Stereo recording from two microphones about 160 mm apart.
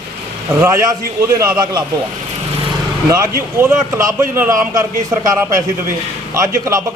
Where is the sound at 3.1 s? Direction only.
15° right (ahead or behind).